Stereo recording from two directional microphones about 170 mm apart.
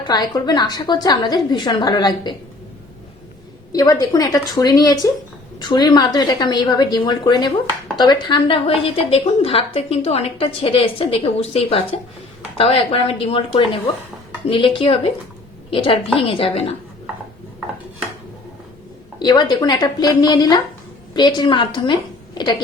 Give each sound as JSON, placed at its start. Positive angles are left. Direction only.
{"t": 0.1, "sound": "a woman's voice", "side_deg": 25}
{"t": 3.7, "sound": "a woman's voice", "side_deg": 20}
{"t": 19.2, "sound": "a woman's voice", "side_deg": 25}
{"t": 22.4, "sound": "a sound", "side_deg": 25}